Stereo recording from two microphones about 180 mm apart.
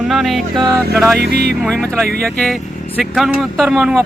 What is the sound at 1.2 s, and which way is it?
Speech, 60° right (ahead or behind).